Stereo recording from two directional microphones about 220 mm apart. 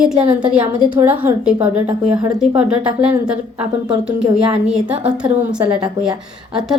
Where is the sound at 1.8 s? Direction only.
20° right (ahead or behind).